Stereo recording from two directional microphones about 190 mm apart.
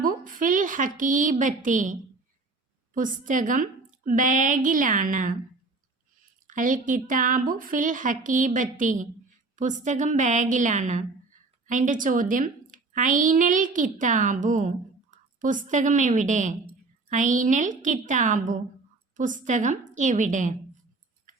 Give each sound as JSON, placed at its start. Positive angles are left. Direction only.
{"t": 0.0, "sound": "a woman's voice", "side_deg": -45}
{"t": 6.5, "sound": "a child's voice", "side_deg": -45}